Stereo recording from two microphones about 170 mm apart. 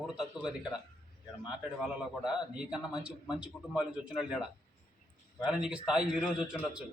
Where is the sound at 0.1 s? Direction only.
5° right (ahead or behind).